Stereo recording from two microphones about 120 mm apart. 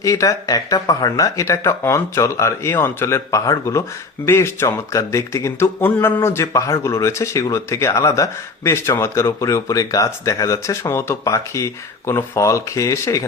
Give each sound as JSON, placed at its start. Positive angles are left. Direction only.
{"t": 0.0, "sound": "speech", "side_deg": 25}